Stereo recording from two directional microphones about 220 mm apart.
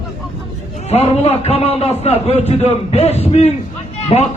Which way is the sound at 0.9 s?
30° left (ahead or behind).